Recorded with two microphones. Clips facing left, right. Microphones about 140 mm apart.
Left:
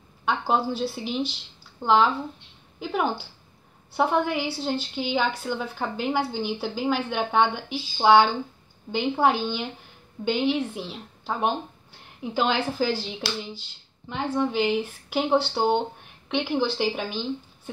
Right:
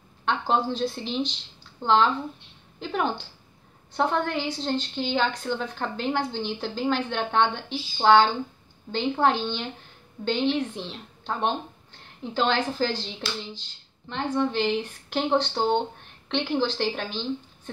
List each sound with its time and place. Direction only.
0.2 s a woman's voice: 10° left (ahead or behind)